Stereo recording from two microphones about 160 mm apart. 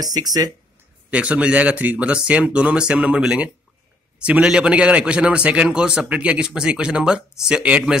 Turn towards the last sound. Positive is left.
turn(degrees=-5)  # may be behind; listen again after turning